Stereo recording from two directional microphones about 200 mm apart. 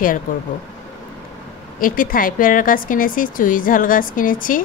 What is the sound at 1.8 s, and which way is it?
Speech, 45° left (ahead or behind).